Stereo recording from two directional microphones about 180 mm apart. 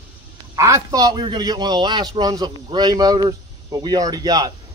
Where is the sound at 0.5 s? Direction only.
20° right (ahead or behind).